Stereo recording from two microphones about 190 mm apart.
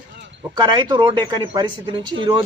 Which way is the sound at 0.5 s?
20° right (ahead or behind).